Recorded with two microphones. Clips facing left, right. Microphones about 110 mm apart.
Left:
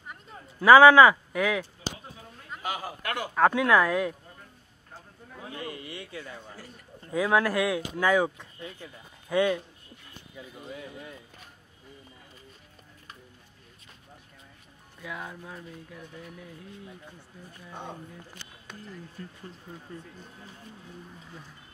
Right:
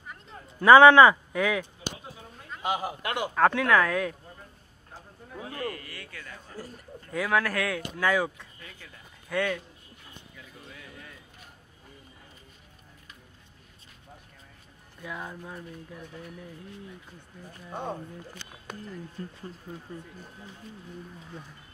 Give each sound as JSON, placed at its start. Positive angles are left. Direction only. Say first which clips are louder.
{"t": 0.1, "sound": "a sound", "louder": "even", "side_deg": 5}
{"t": 2.6, "sound": "a man's voice", "louder": "right 4 dB", "side_deg": -20}
{"t": 3.3, "sound": "speech", "louder": "left 1 dB", "side_deg": 10}
{"t": 5.5, "sound": "a man's voice", "louder": "right 2 dB", "side_deg": 20}
{"t": 10.3, "sound": "a sound", "louder": "left 10 dB", "side_deg": 25}
{"t": 15.0, "sound": "speech", "louder": "right 1 dB", "side_deg": 0}
{"t": 19.2, "sound": "speech", "louder": "right 4 dB", "side_deg": -35}